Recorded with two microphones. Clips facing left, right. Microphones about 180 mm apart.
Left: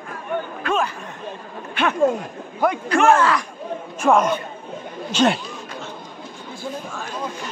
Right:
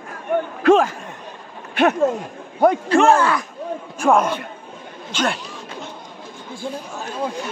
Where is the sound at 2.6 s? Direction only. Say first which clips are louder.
Right 4 dB; 30° right (ahead or behind).